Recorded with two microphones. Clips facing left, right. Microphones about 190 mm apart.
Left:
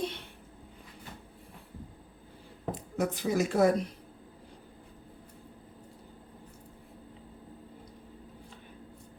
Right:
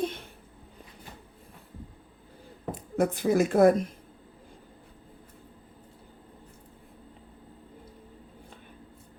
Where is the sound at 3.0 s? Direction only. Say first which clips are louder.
Right 5 dB; 55° right (ahead or behind).